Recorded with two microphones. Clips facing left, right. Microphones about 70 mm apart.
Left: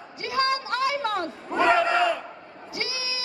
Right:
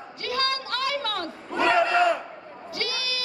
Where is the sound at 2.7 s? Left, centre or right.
Centre.